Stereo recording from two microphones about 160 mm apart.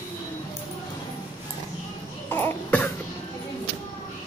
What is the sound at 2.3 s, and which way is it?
Cough, 10° left (ahead or behind).